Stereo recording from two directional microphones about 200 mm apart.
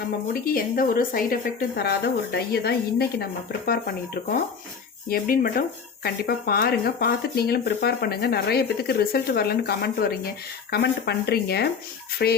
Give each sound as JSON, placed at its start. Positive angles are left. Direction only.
{"t": 0.3, "sound": "speech", "side_deg": 45}